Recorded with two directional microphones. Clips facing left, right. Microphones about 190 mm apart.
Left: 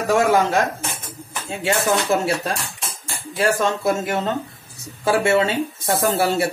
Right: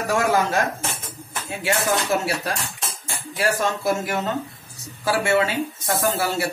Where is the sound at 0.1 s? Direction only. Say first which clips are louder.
Left 4 dB; 25° left (ahead or behind).